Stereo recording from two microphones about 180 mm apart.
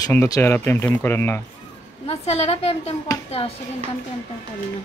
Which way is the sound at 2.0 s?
35° left (ahead or behind).